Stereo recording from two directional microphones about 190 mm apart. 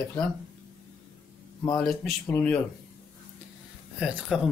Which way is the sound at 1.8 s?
Centre (ahead or behind).